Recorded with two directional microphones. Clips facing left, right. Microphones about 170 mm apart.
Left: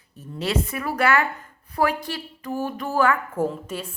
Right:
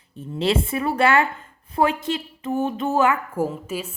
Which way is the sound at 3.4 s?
5° right (ahead or behind).